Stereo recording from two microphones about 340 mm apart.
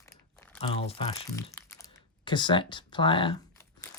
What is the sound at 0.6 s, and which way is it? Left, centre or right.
Speech, centre.